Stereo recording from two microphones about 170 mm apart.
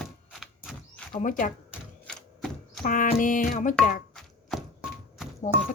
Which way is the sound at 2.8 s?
55° left (ahead or behind).